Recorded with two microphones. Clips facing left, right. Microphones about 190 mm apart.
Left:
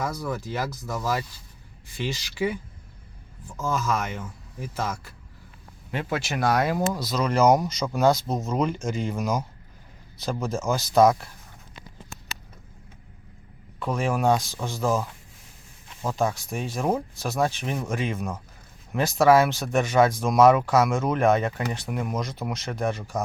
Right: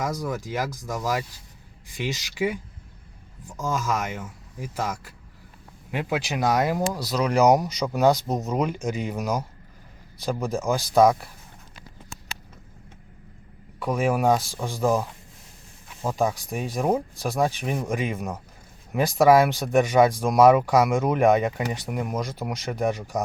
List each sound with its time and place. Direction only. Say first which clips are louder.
0.0 s speech: right 1 dB; 15° right (ahead or behind)
13.7 s speech: right 3 dB; 10° right (ahead or behind)